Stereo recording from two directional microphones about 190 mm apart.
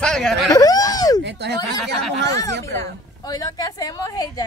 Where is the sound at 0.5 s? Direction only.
20° left (ahead or behind).